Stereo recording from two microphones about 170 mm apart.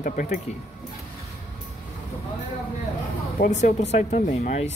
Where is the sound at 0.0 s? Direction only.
50° left (ahead or behind).